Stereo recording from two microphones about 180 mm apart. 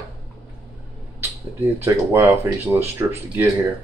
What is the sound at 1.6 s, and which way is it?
Speech, 15° right (ahead or behind).